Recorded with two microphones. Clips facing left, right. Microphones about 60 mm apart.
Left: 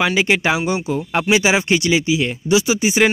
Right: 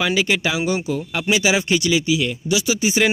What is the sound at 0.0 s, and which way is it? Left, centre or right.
Speech, left.